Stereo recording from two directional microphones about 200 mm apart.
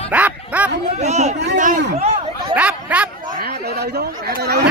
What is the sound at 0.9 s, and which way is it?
Speech, 35° right (ahead or behind).